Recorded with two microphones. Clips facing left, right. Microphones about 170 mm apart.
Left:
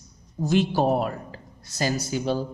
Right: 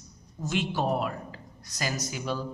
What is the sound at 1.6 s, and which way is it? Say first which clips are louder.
Speech: left 6 dB; 30° left (ahead or behind).